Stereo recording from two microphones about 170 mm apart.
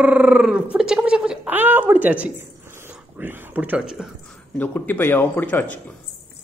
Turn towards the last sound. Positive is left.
turn(degrees=10)  # may be behind; listen again after turning